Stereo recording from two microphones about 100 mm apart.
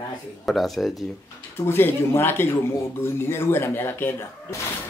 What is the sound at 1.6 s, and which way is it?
Speech, 25° left (ahead or behind).